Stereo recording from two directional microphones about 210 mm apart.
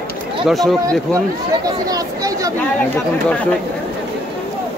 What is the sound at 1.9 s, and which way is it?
Speech, 15° right (ahead or behind).